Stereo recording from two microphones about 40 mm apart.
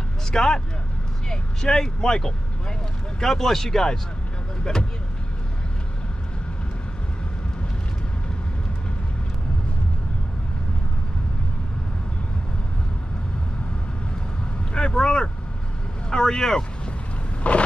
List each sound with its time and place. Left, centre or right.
0.3 s speech: centre
14.7 s vehicle: left
16.1 s speech: centre
17.4 s vehicle: left